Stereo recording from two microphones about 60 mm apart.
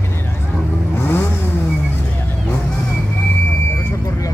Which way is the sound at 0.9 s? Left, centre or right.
Left.